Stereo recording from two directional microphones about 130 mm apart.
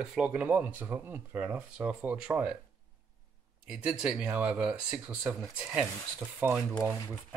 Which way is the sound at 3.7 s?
5° right (ahead or behind).